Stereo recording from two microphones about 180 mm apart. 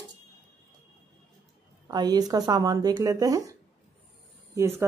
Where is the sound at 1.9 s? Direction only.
20° right (ahead or behind).